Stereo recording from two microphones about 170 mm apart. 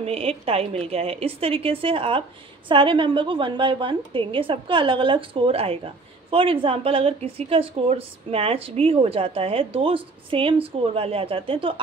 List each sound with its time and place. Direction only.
0.0 s a woman's voice: 35° right (ahead or behind)